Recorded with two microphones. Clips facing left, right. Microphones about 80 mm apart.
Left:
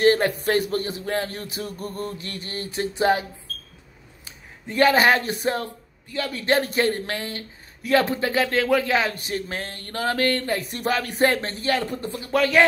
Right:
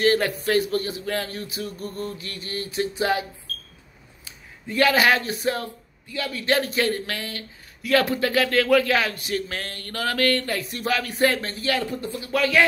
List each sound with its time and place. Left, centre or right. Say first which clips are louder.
0.0 s speech: left 2 dB; left
4.7 s speech: left 2 dB; left
10.6 s speech: left 1 dB; left
11.6 s speech: even; left
12.2 s speech: left 2 dB; left